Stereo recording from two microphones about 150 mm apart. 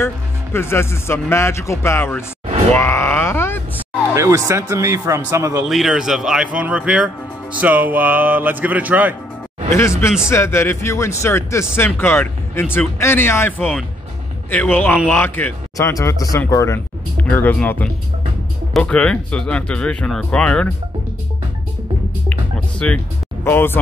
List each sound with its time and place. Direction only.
0.0 s speech: 15° left (ahead or behind)
2.7 s music: 15° left (ahead or behind)
4.1 s speech: 20° right (ahead or behind)
5.6 s speech: 5° right (ahead or behind)
9.7 s speech: 20° left (ahead or behind)
22.8 s speech: 10° left (ahead or behind)